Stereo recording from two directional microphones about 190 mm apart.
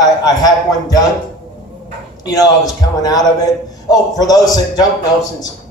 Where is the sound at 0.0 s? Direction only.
20° left (ahead or behind).